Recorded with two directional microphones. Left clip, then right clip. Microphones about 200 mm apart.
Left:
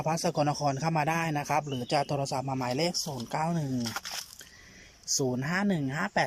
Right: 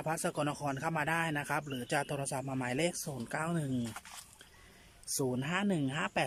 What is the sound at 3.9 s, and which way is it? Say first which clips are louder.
Speech: left 12 dB; 55° left (ahead or behind).